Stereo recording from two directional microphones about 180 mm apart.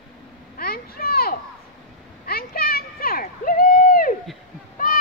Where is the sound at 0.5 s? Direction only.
55° left (ahead or behind).